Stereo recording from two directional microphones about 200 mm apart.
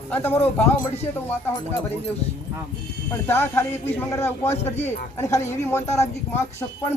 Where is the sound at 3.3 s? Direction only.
10° left (ahead or behind).